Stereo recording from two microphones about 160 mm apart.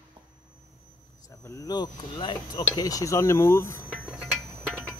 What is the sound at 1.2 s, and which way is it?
Speech, 20° left (ahead or behind).